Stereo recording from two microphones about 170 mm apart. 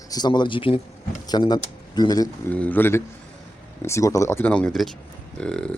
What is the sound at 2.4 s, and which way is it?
Speech, 10° left (ahead or behind).